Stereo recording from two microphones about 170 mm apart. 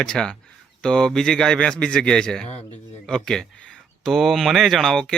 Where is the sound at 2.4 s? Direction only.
40° left (ahead or behind).